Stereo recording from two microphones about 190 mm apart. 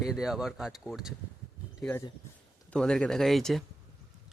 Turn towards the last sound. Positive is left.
turn(degrees=0)  # may be behind; listen again after turning